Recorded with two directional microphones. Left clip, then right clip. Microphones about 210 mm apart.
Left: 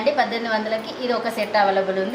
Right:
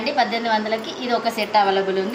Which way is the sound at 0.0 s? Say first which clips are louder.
Even; 10° left (ahead or behind).